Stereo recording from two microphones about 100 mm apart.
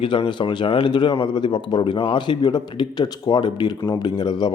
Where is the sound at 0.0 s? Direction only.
55° left (ahead or behind).